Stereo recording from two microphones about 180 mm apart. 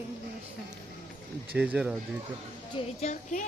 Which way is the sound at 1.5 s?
5° right (ahead or behind).